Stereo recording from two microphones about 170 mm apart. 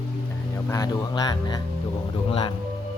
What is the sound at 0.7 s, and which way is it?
Speech, 20° left (ahead or behind).